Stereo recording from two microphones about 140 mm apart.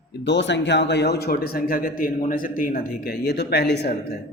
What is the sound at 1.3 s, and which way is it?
Speech, 90° left.